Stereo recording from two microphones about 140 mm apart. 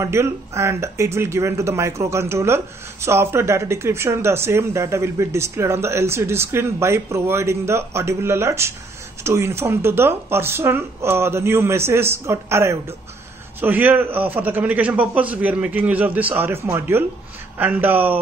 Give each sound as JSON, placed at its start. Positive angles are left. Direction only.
{"t": 0.0, "sound": "speech", "side_deg": -20}